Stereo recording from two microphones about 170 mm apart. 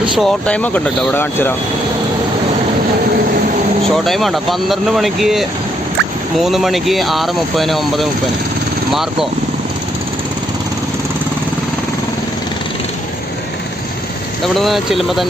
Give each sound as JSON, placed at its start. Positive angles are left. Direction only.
{"t": 0.2, "sound": "speech", "side_deg": 5}
{"t": 3.8, "sound": "speech", "side_deg": 0}
{"t": 14.4, "sound": "speech", "side_deg": 0}